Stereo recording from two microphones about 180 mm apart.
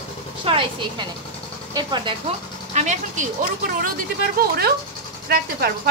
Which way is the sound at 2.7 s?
40° right (ahead or behind).